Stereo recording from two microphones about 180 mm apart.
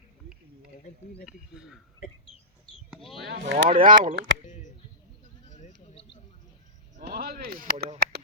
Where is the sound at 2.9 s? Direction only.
Centre (ahead or behind).